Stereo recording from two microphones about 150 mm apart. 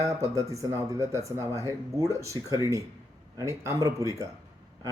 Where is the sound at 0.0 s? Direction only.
20° right (ahead or behind).